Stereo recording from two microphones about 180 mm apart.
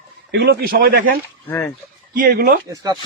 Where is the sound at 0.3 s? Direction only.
70° right (ahead or behind); by 1.2 s 55° right (ahead or behind).